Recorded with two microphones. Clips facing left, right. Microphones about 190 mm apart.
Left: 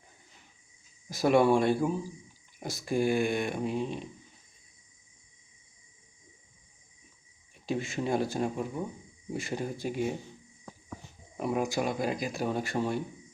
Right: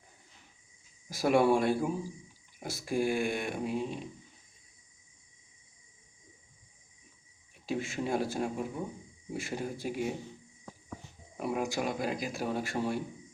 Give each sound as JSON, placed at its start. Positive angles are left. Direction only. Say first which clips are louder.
{"t": 1.1, "sound": "speech", "louder": "left 2 dB", "side_deg": -5}
{"t": 7.7, "sound": "speech", "louder": "left 2 dB", "side_deg": -5}
{"t": 11.3, "sound": "speech", "louder": "left 3 dB", "side_deg": -5}